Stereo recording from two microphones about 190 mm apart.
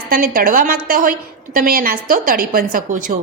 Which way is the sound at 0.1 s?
50° right (ahead or behind).